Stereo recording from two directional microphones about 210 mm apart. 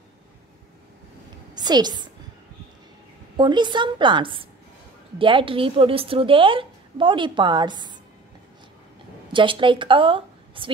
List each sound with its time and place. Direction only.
1.5 s a woman's voice: 20° right (ahead or behind)
3.3 s a woman's voice: 20° right (ahead or behind)
9.3 s a woman's voice: 25° right (ahead or behind)